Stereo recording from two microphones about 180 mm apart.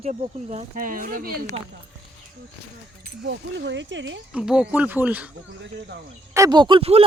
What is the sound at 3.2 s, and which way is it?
Speech, 80° right.